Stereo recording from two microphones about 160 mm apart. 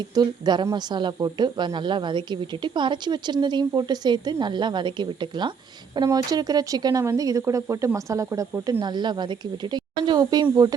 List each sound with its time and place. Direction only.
0.1 s speech: 25° right (ahead or behind)